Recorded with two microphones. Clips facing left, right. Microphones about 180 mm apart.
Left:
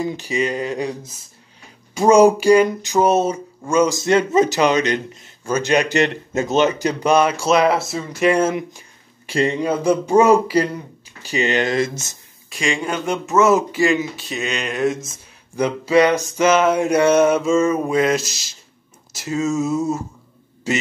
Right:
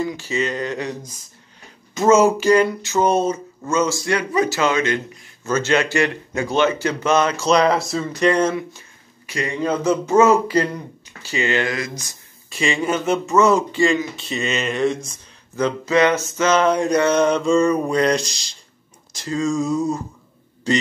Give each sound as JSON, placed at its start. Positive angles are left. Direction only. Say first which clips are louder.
{"t": 0.0, "sound": "speech", "louder": "left 1 dB", "side_deg": 20}
{"t": 4.0, "sound": "speech", "louder": "left 5 dB", "side_deg": 25}
{"t": 9.2, "sound": "a man's voice", "louder": "left 7 dB", "side_deg": 30}
{"t": 9.6, "sound": "speech", "louder": "left 1 dB", "side_deg": 15}
{"t": 12.4, "sound": "speech", "louder": "right 1 dB", "side_deg": 0}